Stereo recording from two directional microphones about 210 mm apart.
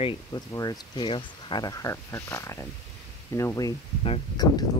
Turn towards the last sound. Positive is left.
turn(degrees=20)  # may be behind; listen again after turning